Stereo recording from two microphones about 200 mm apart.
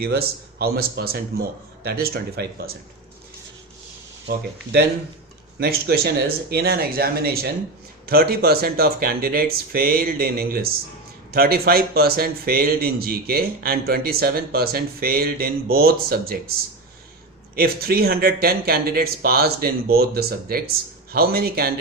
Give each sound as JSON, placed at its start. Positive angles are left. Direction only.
{"t": 0.0, "sound": "speech", "side_deg": -50}
{"t": 4.3, "sound": "speech", "side_deg": -55}
{"t": 17.5, "sound": "speech", "side_deg": -50}